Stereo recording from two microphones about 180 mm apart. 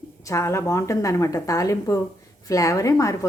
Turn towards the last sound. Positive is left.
turn(degrees=15)  # may be behind; listen again after turning